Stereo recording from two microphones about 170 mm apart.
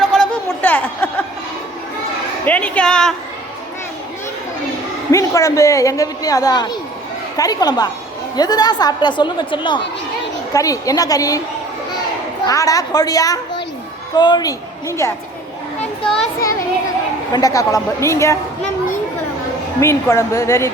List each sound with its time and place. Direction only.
0.4 s a sound: 10° left (ahead or behind)
2.5 s a woman's voice: 10° left (ahead or behind)
5.1 s a woman's voice: 20° left (ahead or behind)
12.5 s a woman's voice: 20° left (ahead or behind)
16.0 s a child's voice: 5° left (ahead or behind)
16.4 s a woman's voice: 20° left (ahead or behind)
19.8 s speech: 15° left (ahead or behind)